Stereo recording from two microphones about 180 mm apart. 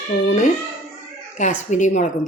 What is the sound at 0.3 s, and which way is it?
A child's voice, 45° left (ahead or behind).